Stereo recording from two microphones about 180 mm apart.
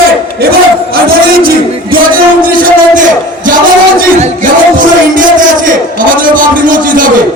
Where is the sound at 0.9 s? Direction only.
55° right (ahead or behind).